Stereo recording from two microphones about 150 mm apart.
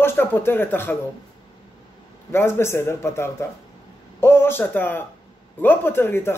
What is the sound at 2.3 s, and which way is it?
Speech, 15° left (ahead or behind).